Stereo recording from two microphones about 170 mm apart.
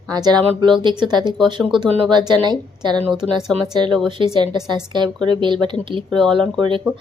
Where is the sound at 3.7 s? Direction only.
25° right (ahead or behind).